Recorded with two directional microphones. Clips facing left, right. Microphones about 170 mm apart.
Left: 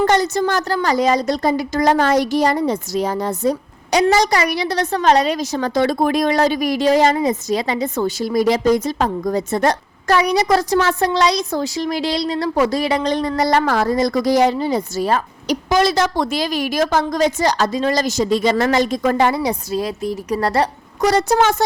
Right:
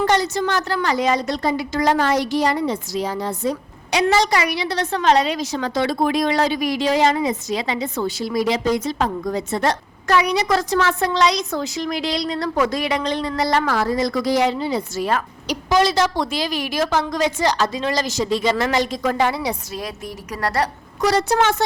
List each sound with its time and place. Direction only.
0.0 s a woman's voice: 45° left (ahead or behind)
15.4 s a woman's voice: 45° left (ahead or behind)
19.7 s a woman's voice: 30° left (ahead or behind)
21.0 s a woman's voice: 45° left (ahead or behind)